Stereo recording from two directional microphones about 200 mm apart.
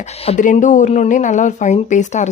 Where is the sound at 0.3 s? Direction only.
35° left (ahead or behind).